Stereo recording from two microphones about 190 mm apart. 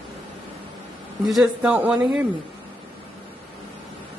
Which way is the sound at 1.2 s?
Centre (ahead or behind).